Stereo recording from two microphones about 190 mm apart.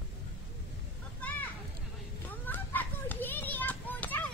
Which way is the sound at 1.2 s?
10° left (ahead or behind).